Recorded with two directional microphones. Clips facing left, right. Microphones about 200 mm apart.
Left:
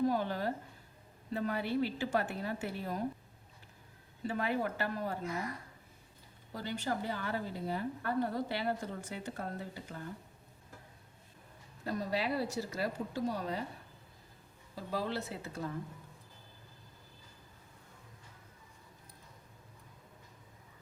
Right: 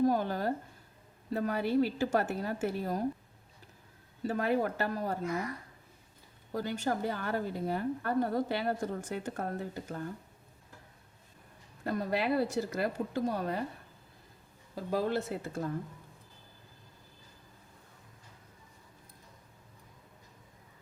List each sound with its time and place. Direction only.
0.0 s a woman's voice: 45° right (ahead or behind)
4.3 s a woman's voice: 45° right (ahead or behind)
6.5 s a woman's voice: 45° right (ahead or behind)
11.9 s a woman's voice: 55° right (ahead or behind)
14.8 s a woman's voice: 50° right (ahead or behind)